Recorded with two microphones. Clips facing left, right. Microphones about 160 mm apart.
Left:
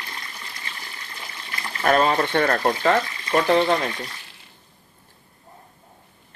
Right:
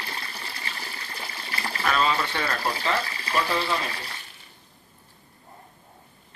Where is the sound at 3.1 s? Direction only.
35° right (ahead or behind).